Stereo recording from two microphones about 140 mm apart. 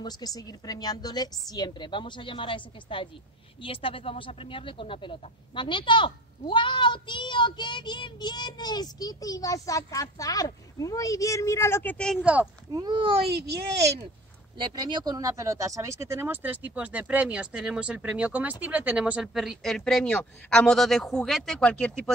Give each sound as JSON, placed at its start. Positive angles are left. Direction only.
{"t": 0.0, "sound": "speech", "side_deg": 25}
{"t": 12.2, "sound": "speech", "side_deg": -10}
{"t": 12.7, "sound": "a child's voice", "side_deg": -30}
{"t": 14.6, "sound": "speech", "side_deg": -30}